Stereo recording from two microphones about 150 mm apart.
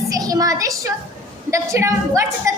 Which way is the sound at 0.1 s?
25° right (ahead or behind).